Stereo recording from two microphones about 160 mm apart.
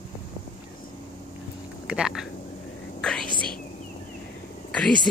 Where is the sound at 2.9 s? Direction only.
5° left (ahead or behind).